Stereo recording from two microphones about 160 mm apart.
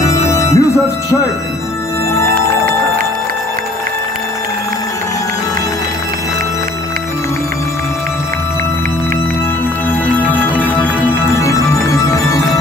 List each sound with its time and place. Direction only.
0.3 s music: 15° left (ahead or behind)